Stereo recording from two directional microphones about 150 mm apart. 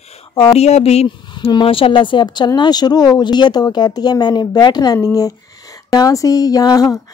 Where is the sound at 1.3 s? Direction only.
30° left (ahead or behind).